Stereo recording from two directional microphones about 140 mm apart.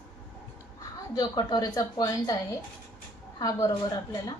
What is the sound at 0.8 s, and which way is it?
Speech, 30° left (ahead or behind).